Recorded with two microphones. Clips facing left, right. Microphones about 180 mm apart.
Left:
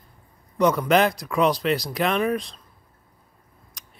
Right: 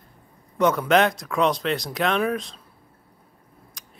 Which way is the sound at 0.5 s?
Centre (ahead or behind).